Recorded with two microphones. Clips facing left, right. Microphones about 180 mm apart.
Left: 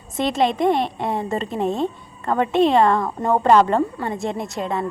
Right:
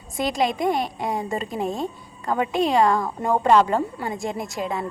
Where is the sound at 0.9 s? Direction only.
30° left (ahead or behind).